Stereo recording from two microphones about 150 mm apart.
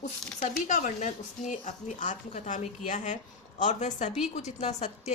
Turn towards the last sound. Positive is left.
turn(degrees=50)  # may be behind; listen again after turning